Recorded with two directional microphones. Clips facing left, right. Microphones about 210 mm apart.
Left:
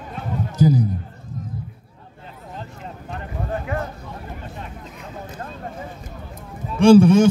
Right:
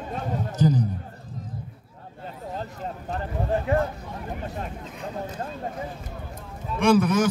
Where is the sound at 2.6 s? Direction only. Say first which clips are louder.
Right 2 dB; 35° right (ahead or behind).